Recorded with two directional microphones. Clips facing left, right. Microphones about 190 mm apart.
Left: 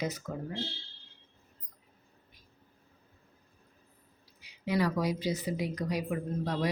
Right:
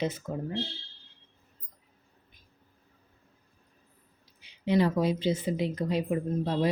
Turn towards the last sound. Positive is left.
turn(degrees=-25)  # may be behind; listen again after turning